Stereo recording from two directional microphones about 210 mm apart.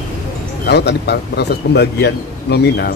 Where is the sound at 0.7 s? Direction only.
55° left (ahead or behind).